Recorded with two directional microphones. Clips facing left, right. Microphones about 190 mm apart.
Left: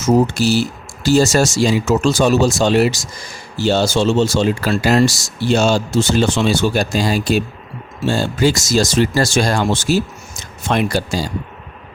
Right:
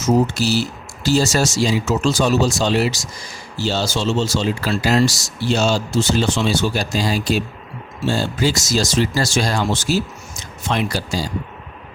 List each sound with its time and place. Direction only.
0.3 s speech: 50° left (ahead or behind)